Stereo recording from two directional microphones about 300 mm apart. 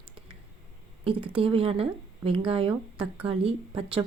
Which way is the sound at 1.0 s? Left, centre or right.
Centre.